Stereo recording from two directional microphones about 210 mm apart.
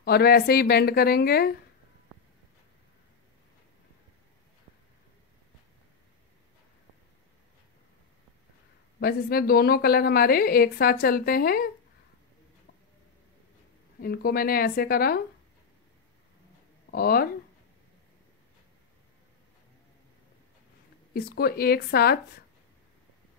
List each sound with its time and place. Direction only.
0.0 s a woman's voice: 45° left (ahead or behind)
9.0 s a woman's voice: 45° left (ahead or behind)
14.0 s a woman's voice: 45° left (ahead or behind)
16.9 s a woman's voice: 45° left (ahead or behind)
21.1 s a woman's voice: 45° left (ahead or behind)